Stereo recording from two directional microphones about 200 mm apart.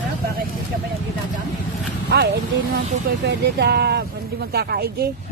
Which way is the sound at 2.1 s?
55° right (ahead or behind).